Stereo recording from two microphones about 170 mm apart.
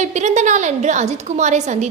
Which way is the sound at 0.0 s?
45° right (ahead or behind).